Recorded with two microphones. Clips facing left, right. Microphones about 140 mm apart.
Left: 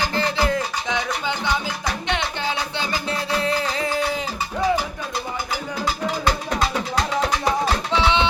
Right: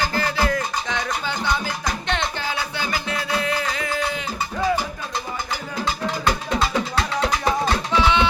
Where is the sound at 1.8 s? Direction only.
10° left (ahead or behind).